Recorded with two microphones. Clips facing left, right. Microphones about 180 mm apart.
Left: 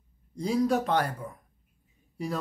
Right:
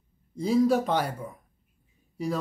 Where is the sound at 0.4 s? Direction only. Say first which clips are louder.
Right 3 dB; centre (ahead or behind).